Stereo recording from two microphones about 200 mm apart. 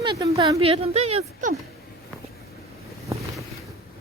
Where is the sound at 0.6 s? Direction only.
30° right (ahead or behind).